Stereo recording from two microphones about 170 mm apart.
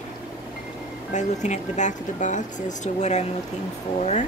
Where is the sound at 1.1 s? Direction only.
45° left (ahead or behind).